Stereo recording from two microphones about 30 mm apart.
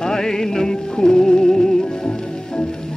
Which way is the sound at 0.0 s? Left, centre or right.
Centre.